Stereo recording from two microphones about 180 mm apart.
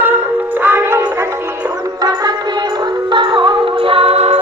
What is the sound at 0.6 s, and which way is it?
Music, 10° right (ahead or behind).